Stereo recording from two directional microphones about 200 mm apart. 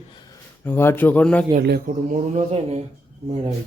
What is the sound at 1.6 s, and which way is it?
Speech, 50° right (ahead or behind).